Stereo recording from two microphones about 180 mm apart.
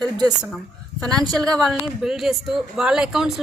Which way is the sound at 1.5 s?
Centre (ahead or behind).